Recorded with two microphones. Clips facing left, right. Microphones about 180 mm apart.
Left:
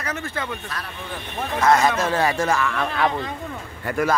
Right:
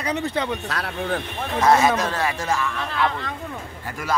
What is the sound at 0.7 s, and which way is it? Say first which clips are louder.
Speech: right 7 dB; 70° right (ahead or behind).